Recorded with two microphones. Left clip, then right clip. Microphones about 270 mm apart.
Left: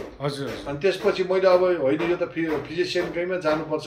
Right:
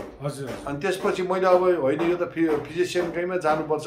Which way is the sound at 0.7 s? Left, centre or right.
Centre.